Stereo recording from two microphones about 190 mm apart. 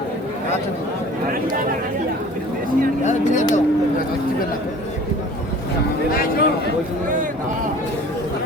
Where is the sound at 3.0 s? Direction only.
40° left (ahead or behind).